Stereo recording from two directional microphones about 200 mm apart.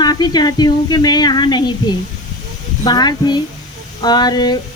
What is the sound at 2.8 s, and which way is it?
Speech, 20° left (ahead or behind).